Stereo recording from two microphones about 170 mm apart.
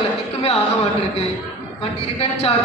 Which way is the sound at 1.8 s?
35° left (ahead or behind).